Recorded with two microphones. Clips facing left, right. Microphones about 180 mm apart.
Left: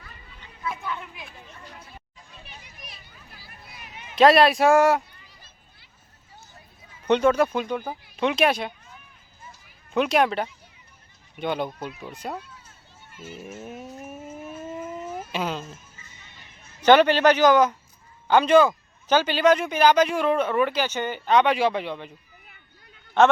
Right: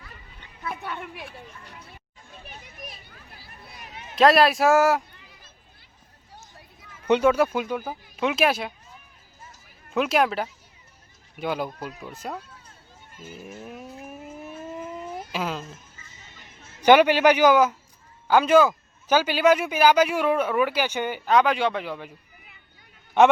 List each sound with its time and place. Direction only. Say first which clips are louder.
0.6 s a sound: left 1 dB; 65° right (ahead or behind)
2.4 s children playing: right 5 dB; 45° right (ahead or behind)
4.1 s speech: left 1 dB; centre (ahead or behind)
7.1 s speech: even; 10° right (ahead or behind)
9.9 s speech: left 1 dB; centre (ahead or behind)
13.1 s a sound: left 2 dB; 5° left (ahead or behind)
16.8 s a man's voice: even; 10° right (ahead or behind)